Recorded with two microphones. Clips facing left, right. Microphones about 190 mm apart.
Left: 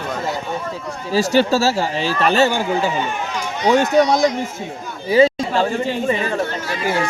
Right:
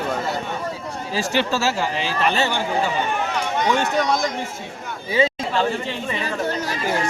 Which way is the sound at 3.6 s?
45° left (ahead or behind).